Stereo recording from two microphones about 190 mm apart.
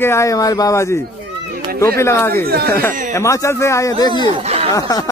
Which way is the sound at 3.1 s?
15° left (ahead or behind).